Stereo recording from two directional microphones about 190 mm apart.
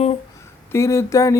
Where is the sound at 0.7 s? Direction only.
15° left (ahead or behind).